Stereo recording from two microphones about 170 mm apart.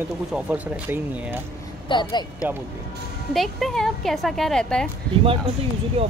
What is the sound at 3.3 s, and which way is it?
A woman's voice, centre (ahead or behind).